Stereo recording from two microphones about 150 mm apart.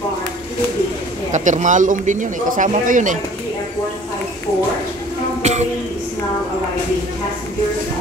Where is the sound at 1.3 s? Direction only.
55° right (ahead or behind).